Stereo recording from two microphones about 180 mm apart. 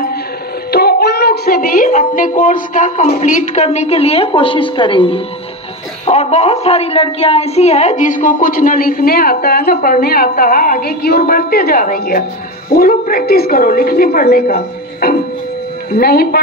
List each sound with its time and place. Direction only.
0.7 s a woman's voice: 60° left (ahead or behind)